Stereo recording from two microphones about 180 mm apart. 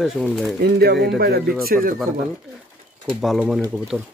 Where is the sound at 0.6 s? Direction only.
65° right (ahead or behind).